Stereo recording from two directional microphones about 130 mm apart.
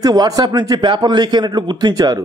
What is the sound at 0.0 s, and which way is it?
A man's voice, 30° right (ahead or behind).